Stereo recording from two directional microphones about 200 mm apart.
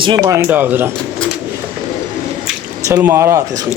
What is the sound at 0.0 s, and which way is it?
Speech, 25° right (ahead or behind).